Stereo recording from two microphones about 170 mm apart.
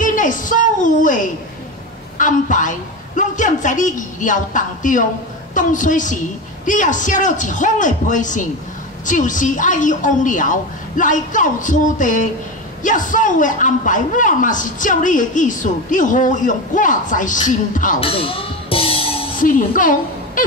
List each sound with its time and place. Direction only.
0.0 s a sound: 50° left (ahead or behind)
2.1 s a woman's voice: 50° left (ahead or behind)
18.0 s music: 35° left (ahead or behind)
19.4 s a woman's voice: 55° left (ahead or behind)